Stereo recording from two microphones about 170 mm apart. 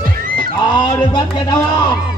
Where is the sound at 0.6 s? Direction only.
25° left (ahead or behind).